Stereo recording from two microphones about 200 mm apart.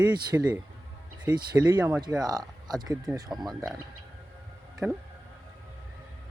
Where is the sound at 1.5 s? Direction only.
10° right (ahead or behind).